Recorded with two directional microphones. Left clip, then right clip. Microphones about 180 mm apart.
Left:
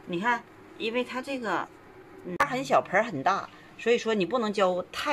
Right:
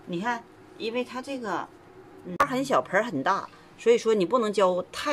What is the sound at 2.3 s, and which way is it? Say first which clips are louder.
A woman's voice: even; 20° right (ahead or behind).